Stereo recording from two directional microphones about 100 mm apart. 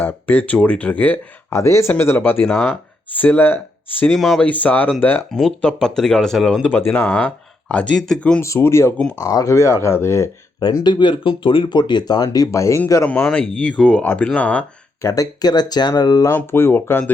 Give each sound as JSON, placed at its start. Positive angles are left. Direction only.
{"t": 0.0, "sound": "speech", "side_deg": 20}
{"t": 1.5, "sound": "speech", "side_deg": 30}
{"t": 4.0, "sound": "speech", "side_deg": 5}
{"t": 4.4, "sound": "speech", "side_deg": 15}
{"t": 5.3, "sound": "speech", "side_deg": 5}
{"t": 6.6, "sound": "speech", "side_deg": 20}
{"t": 8.4, "sound": "speech", "side_deg": 25}
{"t": 9.1, "sound": "speech", "side_deg": 35}
{"t": 10.6, "sound": "speech", "side_deg": 40}
{"t": 13.2, "sound": "speech", "side_deg": 5}
{"t": 15.0, "sound": "speech", "side_deg": 35}
{"t": 16.3, "sound": "speech", "side_deg": 25}